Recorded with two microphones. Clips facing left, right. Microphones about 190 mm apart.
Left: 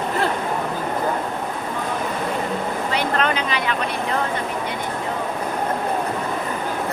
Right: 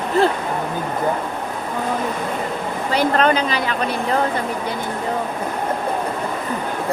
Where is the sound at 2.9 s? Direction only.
35° right (ahead or behind).